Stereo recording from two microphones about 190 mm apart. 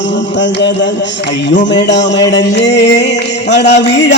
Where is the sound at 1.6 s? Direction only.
70° left (ahead or behind).